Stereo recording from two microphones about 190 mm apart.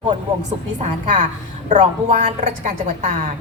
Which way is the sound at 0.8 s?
40° right (ahead or behind).